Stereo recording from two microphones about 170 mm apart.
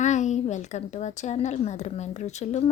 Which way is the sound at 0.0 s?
45° left (ahead or behind).